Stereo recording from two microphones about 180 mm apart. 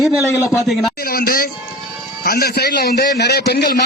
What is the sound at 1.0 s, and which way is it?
A man's voice, 55° left (ahead or behind).